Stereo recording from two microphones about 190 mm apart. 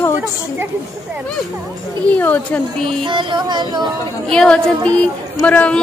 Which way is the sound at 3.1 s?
25° right (ahead or behind).